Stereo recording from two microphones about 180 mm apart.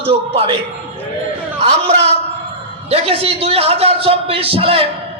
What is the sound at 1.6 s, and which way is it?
A man's voice, 35° right (ahead or behind).